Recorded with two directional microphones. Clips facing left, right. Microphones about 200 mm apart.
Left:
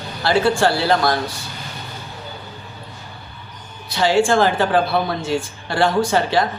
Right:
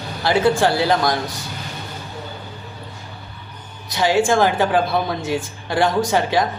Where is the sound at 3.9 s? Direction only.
15° right (ahead or behind).